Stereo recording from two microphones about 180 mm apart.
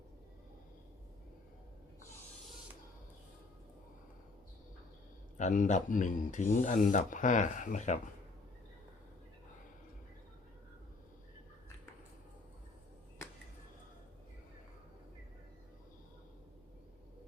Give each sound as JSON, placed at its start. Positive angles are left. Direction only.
{"t": 5.4, "sound": "speech", "side_deg": 45}